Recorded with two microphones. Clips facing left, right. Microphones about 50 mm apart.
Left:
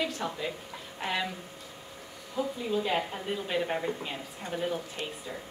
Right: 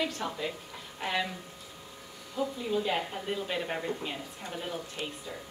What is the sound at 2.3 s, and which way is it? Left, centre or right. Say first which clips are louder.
Speech: left 1 dB; centre.